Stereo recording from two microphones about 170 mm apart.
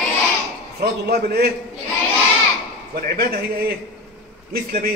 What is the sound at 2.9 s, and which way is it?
A man's voice, 65° right (ahead or behind).